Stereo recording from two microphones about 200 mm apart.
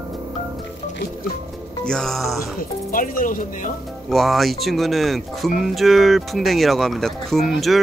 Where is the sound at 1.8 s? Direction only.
Centre (ahead or behind).